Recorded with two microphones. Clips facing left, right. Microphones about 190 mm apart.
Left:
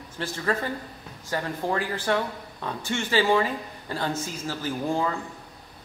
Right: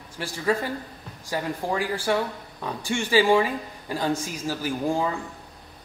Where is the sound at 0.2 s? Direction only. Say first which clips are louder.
Right 2 dB; 10° right (ahead or behind).